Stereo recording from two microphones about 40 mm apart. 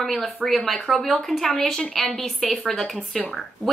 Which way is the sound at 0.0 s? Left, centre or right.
Centre.